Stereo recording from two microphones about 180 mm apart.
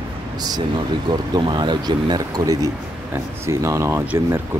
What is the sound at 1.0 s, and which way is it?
Speech, 25° right (ahead or behind).